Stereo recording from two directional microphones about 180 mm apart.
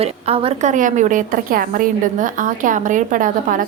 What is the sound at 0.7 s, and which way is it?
A woman's voice, 45° right (ahead or behind).